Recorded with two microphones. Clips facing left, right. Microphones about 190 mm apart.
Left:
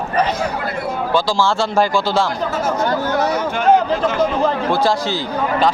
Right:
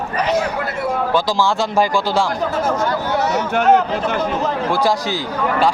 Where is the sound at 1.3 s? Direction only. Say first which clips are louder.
Even; 15° right (ahead or behind).